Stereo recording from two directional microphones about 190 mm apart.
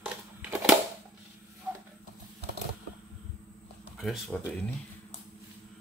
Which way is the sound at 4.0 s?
Centre (ahead or behind).